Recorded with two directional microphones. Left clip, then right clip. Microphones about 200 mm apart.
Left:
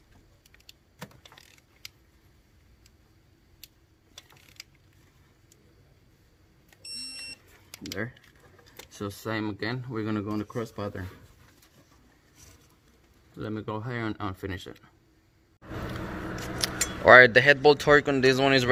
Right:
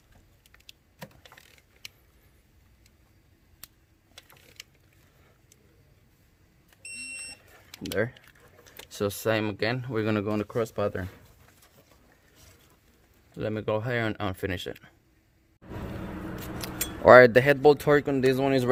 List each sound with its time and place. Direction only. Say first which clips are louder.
7.9 s speech: right 8 dB; 60° right (ahead or behind)
13.3 s speech: right 6 dB; 45° right (ahead or behind)
16.6 s keys jangling: left 4 dB; 10° right (ahead or behind)
17.1 s speech: even; 30° right (ahead or behind)